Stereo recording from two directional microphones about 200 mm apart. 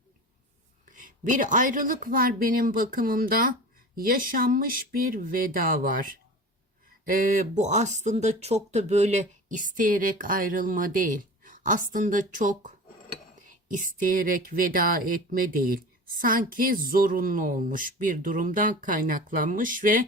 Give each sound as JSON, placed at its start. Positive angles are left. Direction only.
{"t": 0.9, "sound": "speech", "side_deg": -40}